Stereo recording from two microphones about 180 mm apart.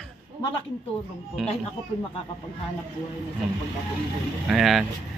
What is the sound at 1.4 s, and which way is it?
Speech, centre (ahead or behind).